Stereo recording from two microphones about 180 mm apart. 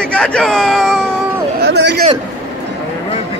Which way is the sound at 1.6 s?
70° right (ahead or behind).